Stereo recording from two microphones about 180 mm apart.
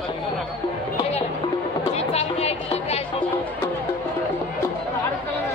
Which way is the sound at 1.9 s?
35° left (ahead or behind).